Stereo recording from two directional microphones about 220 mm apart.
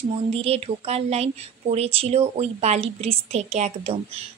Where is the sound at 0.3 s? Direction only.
25° right (ahead or behind).